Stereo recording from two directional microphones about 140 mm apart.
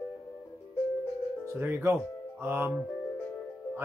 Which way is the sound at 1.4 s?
15° right (ahead or behind).